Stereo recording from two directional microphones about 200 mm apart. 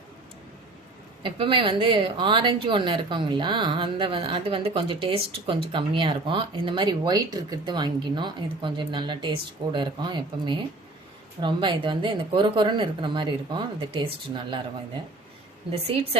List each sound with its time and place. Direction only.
1.2 s speech: 25° right (ahead or behind)